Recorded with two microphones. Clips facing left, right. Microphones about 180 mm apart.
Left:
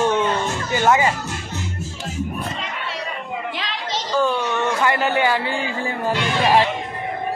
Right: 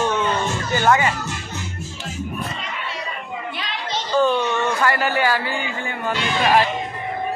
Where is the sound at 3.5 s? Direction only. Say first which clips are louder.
Left 1 dB; 90° left.